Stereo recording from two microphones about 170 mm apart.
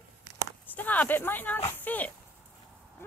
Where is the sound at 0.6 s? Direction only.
10° left (ahead or behind).